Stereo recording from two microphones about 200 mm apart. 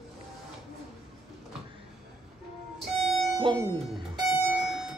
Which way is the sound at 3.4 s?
20° right (ahead or behind).